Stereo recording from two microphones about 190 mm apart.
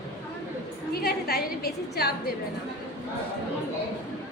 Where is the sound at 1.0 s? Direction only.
55° left (ahead or behind).